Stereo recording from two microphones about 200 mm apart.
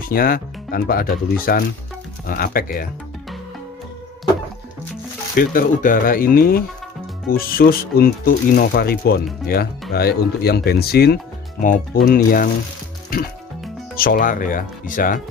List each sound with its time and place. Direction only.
0.0 s speech: 45° left (ahead or behind)
5.3 s speech: 45° left (ahead or behind)
11.6 s speech: 40° left (ahead or behind)
13.9 s speech: 45° left (ahead or behind)